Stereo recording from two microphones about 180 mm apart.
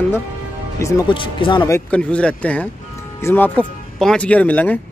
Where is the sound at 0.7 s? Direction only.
15° left (ahead or behind).